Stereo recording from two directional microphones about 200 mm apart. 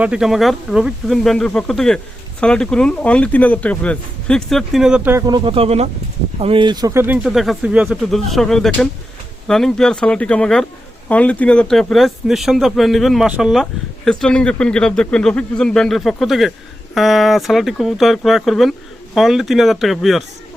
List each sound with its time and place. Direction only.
0.0 s speech: 5° right (ahead or behind)
7.3 s speech: centre (ahead or behind)